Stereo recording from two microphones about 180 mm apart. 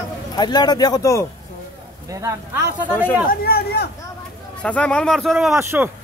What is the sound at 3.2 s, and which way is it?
Speech, 60° left (ahead or behind).